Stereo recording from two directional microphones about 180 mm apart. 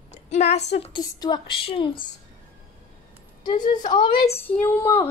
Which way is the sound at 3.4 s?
25° left (ahead or behind).